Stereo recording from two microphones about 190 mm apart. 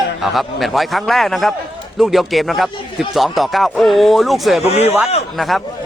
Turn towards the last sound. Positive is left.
turn(degrees=0)  # may be behind; listen again after turning